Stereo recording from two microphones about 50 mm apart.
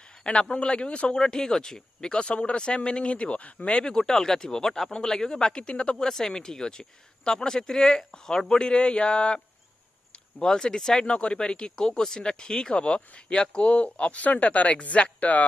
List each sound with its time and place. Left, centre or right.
0.2 s a man's voice: centre
6.0 s a man's voice: centre
10.4 s a man's voice: centre; by 15.4 s left